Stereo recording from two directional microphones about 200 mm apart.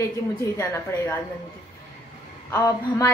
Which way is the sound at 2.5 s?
10° left (ahead or behind).